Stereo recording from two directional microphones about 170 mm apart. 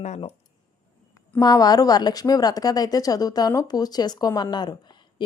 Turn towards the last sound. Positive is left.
turn(degrees=25)  # may be behind; listen again after turning